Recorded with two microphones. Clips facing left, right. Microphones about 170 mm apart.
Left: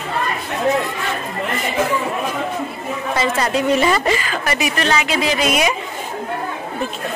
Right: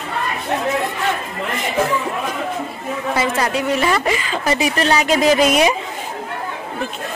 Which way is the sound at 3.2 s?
5° right (ahead or behind).